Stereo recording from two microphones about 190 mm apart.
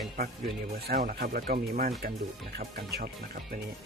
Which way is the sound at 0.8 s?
50° right (ahead or behind).